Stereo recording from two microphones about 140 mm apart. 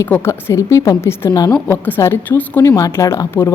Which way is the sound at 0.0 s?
15° left (ahead or behind).